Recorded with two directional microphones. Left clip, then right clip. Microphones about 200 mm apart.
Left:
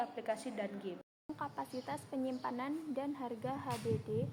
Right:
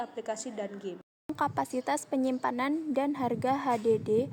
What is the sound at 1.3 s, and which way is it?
A woman's voice, 50° right (ahead or behind).